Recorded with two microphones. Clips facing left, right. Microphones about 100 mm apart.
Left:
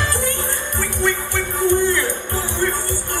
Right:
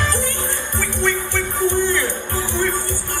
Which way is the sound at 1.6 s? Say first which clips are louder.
Left 2 dB; 20° right (ahead or behind).